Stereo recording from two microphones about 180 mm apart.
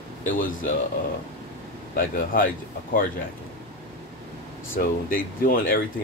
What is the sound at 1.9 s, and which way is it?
Speech, 50° left (ahead or behind).